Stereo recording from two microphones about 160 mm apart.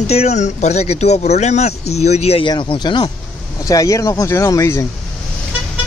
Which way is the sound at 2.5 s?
30° left (ahead or behind).